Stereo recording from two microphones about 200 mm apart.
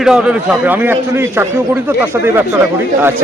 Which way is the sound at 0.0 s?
5° right (ahead or behind).